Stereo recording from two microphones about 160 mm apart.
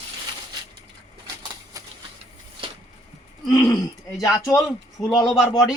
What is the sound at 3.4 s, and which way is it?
Speech, 25° left (ahead or behind).